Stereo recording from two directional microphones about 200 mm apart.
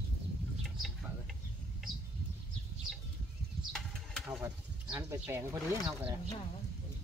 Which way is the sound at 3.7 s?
Centre (ahead or behind).